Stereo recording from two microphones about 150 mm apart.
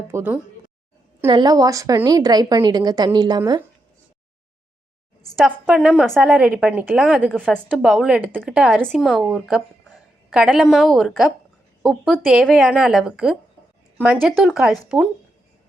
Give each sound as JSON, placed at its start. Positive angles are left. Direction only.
{"t": 0.1, "sound": "speech", "side_deg": -15}
{"t": 1.3, "sound": "a woman's voice", "side_deg": -25}
{"t": 5.5, "sound": "a woman's voice", "side_deg": -5}